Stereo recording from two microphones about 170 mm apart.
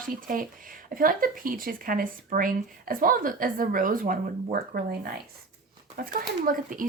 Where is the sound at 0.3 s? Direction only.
55° right (ahead or behind).